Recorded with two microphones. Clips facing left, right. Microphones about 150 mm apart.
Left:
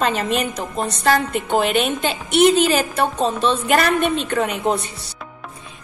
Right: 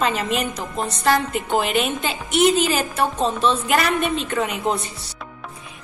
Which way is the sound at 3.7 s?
55° left (ahead or behind).